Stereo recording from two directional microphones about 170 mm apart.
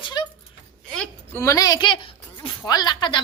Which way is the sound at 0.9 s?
5° left (ahead or behind).